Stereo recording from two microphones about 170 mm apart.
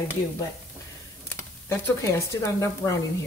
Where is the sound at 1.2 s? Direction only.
15° left (ahead or behind).